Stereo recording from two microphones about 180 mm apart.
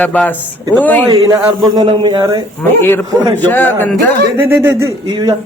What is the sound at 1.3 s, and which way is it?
A man's voice, 20° right (ahead or behind).